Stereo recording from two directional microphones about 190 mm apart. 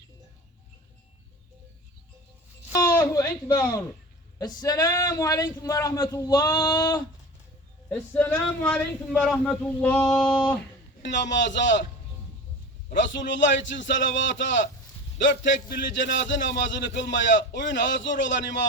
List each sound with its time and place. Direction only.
2.7 s a sound: 15° left (ahead or behind)
4.4 s speech: 20° left (ahead or behind)
7.9 s speech: 5° left (ahead or behind)
10.1 s speech: 20° left (ahead or behind)
11.0 s a man's voice: 70° left (ahead or behind)
12.9 s a man's voice: 70° left (ahead or behind)
15.7 s a man's voice: 70° left (ahead or behind)